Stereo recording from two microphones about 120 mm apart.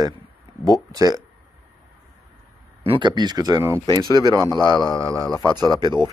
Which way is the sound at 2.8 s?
40° right (ahead or behind).